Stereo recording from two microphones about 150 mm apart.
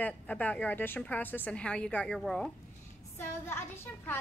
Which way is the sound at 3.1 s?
15° left (ahead or behind).